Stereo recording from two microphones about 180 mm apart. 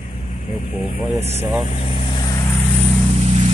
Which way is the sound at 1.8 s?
25° left (ahead or behind).